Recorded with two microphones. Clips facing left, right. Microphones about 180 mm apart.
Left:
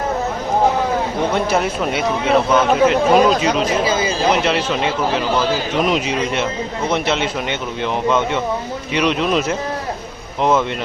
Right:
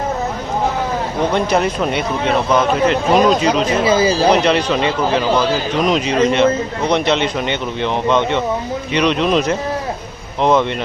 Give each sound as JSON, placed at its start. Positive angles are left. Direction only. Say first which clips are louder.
{"t": 1.5, "sound": "a man's voice", "louder": "right 2 dB", "side_deg": 5}
{"t": 3.8, "sound": "speech", "louder": "right 5 dB", "side_deg": -30}
{"t": 4.4, "sound": "a man's voice", "louder": "right 3 dB", "side_deg": 5}